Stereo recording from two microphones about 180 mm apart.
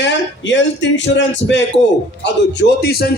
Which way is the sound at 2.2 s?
70° left (ahead or behind).